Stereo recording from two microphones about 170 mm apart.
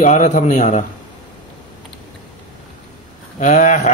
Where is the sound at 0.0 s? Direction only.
50° left (ahead or behind).